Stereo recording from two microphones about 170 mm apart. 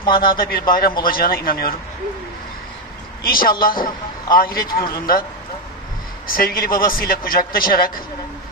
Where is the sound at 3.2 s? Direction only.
60° left (ahead or behind).